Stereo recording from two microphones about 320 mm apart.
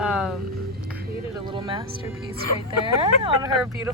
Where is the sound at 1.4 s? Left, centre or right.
Centre.